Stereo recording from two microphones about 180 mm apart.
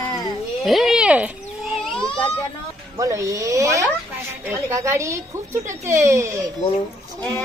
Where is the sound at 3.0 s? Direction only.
20° right (ahead or behind).